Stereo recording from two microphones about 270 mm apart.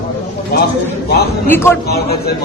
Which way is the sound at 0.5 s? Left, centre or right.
Left.